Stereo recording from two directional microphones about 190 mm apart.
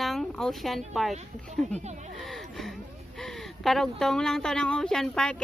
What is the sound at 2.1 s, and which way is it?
Speech, centre (ahead or behind).